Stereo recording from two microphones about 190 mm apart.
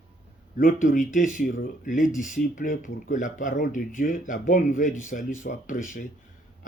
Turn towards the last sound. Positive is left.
turn(degrees=45)  # may be behind; listen again after turning